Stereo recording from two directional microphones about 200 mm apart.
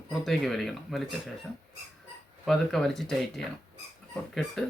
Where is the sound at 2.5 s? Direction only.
Centre (ahead or behind).